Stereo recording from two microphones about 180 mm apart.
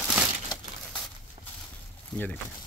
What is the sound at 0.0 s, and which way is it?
Crumpling, 5° right (ahead or behind).